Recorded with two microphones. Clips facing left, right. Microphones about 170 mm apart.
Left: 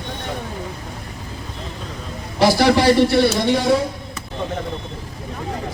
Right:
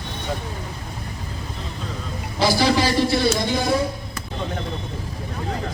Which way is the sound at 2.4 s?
65° left (ahead or behind).